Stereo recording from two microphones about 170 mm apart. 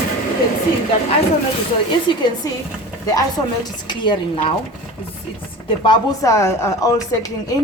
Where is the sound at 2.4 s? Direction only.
20° left (ahead or behind).